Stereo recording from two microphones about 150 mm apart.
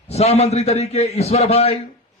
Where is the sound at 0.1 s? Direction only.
45° left (ahead or behind).